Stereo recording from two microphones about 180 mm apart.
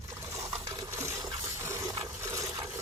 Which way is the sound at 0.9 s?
15° right (ahead or behind).